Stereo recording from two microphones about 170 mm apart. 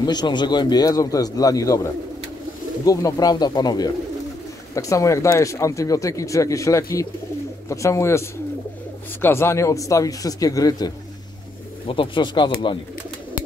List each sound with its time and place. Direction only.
0.0 s speech: 25° left (ahead or behind)
11.9 s speech: 30° left (ahead or behind)